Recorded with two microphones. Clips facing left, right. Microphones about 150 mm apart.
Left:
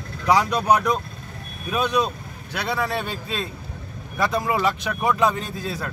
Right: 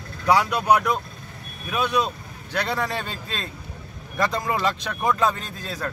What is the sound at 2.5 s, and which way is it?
Speech, 5° left (ahead or behind).